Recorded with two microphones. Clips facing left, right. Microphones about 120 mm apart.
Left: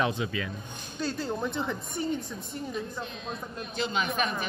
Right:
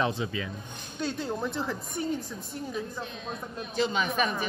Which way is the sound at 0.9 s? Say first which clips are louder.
Even; centre (ahead or behind).